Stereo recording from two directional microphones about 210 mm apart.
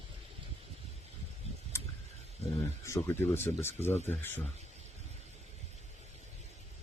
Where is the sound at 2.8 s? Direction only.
10° left (ahead or behind).